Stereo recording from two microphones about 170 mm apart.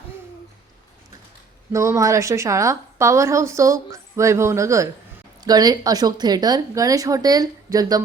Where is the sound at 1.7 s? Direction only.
15° right (ahead or behind).